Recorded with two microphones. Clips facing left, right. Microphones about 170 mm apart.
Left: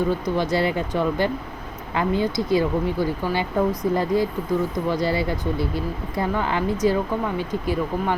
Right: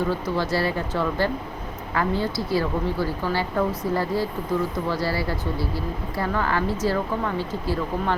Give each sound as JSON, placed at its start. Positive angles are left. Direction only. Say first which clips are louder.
{"t": 0.1, "sound": "speech", "louder": "left 2 dB", "side_deg": 20}